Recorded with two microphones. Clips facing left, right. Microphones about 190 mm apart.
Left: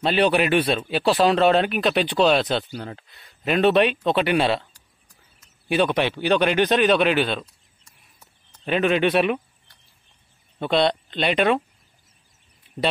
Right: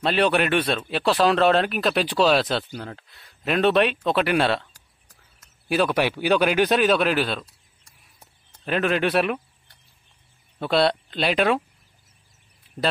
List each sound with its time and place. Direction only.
0.0 s speech: centre (ahead or behind)
5.7 s speech: centre (ahead or behind)
7.4 s a sound: 35° right (ahead or behind)
8.6 s speech: centre (ahead or behind)
10.6 s speech: 5° right (ahead or behind)